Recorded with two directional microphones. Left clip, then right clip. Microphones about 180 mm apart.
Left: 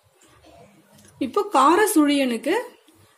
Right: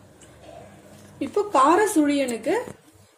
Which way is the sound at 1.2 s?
40° left (ahead or behind).